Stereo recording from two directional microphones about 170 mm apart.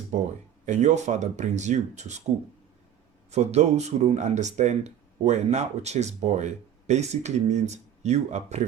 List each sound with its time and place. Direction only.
0.1 s speech: 45° right (ahead or behind)
3.3 s speech: 40° right (ahead or behind)